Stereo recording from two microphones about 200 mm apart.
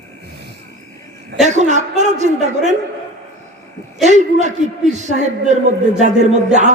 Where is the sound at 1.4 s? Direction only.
35° right (ahead or behind).